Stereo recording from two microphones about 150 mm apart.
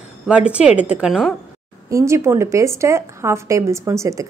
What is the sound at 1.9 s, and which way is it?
Speech, 20° right (ahead or behind).